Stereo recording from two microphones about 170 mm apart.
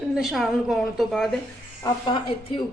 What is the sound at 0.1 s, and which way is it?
A woman's voice, centre (ahead or behind).